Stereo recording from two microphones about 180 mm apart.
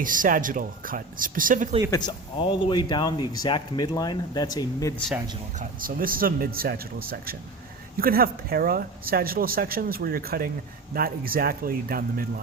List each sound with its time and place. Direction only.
0.0 s speech: 50° right (ahead or behind)
1.9 s speech: 25° left (ahead or behind)
5.5 s speech: 50° right (ahead or behind)